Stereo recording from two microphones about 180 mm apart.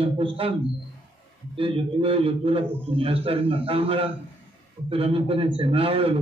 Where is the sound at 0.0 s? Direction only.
30° right (ahead or behind).